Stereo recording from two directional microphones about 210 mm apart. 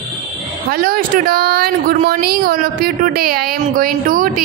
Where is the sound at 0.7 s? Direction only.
45° right (ahead or behind).